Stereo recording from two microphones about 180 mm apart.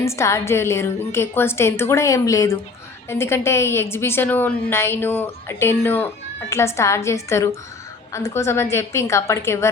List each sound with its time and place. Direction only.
0.0 s a woman's voice: 15° left (ahead or behind)